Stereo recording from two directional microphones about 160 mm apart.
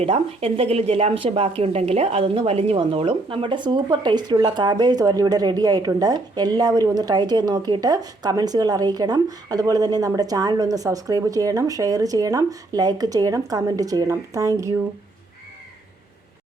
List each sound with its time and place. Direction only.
0.0 s a woman's voice: 40° right (ahead or behind); by 14.8 s 20° right (ahead or behind)